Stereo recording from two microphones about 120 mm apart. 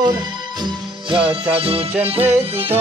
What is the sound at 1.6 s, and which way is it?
Music, 55° right (ahead or behind).